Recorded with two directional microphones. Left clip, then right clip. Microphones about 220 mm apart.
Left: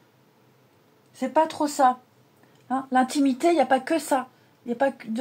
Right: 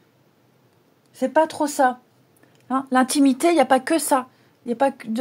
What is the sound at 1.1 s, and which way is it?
Speech, 45° right (ahead or behind).